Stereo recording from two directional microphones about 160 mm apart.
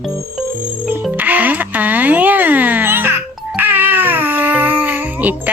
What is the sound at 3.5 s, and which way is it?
Crying, 10° right (ahead or behind).